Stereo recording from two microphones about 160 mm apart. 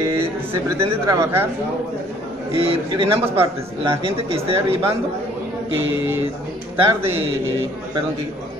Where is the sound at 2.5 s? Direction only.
35° right (ahead or behind).